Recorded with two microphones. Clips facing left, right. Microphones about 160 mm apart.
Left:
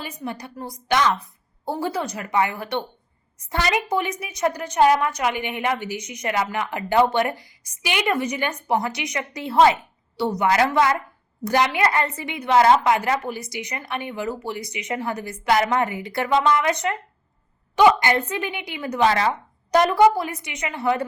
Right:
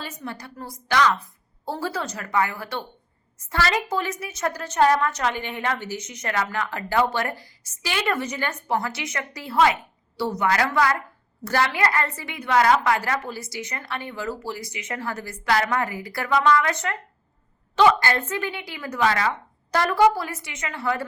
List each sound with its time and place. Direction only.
0.0 s a woman's voice: 15° left (ahead or behind)